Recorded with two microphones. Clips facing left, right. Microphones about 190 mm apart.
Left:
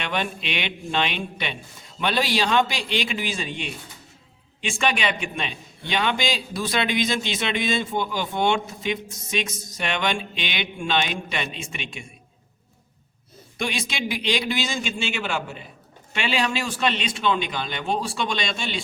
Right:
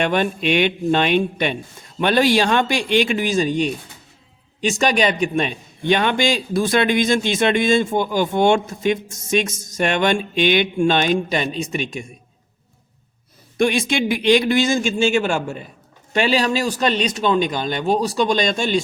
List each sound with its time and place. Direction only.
0.0 s a man's voice: 45° right (ahead or behind)
13.6 s a man's voice: 50° right (ahead or behind)